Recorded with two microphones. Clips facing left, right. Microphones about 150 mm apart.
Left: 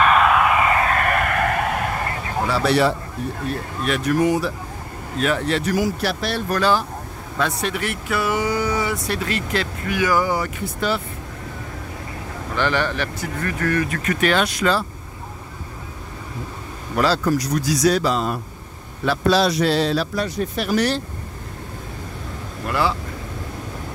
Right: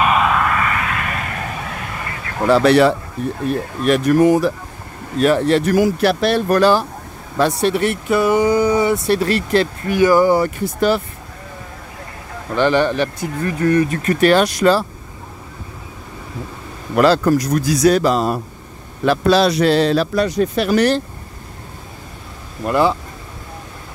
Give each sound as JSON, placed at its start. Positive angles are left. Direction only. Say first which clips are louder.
{"t": 0.0, "sound": "a sound", "louder": "even", "side_deg": -5}
{"t": 0.7, "sound": "a sound", "louder": "left 3 dB", "side_deg": 30}
{"t": 0.9, "sound": "a sound", "louder": "left 5 dB", "side_deg": 55}
{"t": 2.4, "sound": "speech", "louder": "right 7 dB", "side_deg": -65}
{"t": 3.8, "sound": "speech", "louder": "right 6 dB", "side_deg": -45}
{"t": 7.3, "sound": "speech", "louder": "right 7 dB", "side_deg": -30}
{"t": 12.5, "sound": "speech", "louder": "right 7 dB", "side_deg": -20}
{"t": 13.8, "sound": "speech", "louder": "right 6 dB", "side_deg": -35}
{"t": 16.9, "sound": "speech", "louder": "right 6 dB", "side_deg": -55}
{"t": 19.0, "sound": "speech", "louder": "right 4 dB", "side_deg": -60}